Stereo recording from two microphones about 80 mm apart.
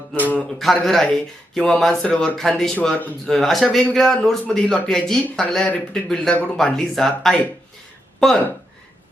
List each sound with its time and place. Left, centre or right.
0.6 s speech: centre
2.4 s speech: centre
6.3 s speech: centre
6.7 s speech: centre